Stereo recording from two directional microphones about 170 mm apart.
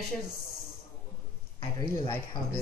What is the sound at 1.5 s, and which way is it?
Speech, 30° left (ahead or behind).